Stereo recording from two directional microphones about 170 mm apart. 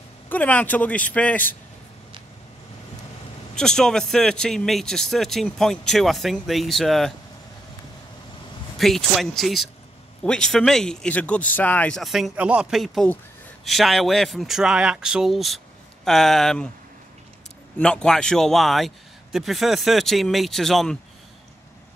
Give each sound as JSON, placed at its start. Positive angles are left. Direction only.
{"t": 0.3, "sound": "a man's voice", "side_deg": 10}
{"t": 3.5, "sound": "speech", "side_deg": 5}
{"t": 8.7, "sound": "speech", "side_deg": 0}
{"t": 17.7, "sound": "speech", "side_deg": 5}